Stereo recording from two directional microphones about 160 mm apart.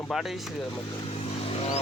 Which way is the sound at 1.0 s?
35° left (ahead or behind).